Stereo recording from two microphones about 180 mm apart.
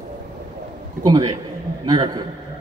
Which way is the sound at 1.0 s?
20° right (ahead or behind).